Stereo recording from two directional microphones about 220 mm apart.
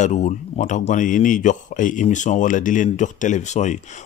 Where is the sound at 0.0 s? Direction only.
35° left (ahead or behind).